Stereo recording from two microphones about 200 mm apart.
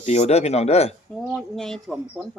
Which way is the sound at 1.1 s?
Centre (ahead or behind).